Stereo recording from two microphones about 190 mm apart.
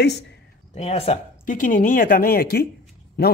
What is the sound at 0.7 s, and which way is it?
A man's voice, 30° left (ahead or behind).